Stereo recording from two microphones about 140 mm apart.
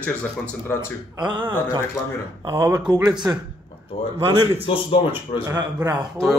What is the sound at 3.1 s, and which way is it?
Speech, 30° right (ahead or behind).